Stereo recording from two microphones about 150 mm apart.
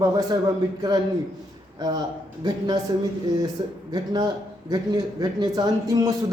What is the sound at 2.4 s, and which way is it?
Speech, 30° right (ahead or behind).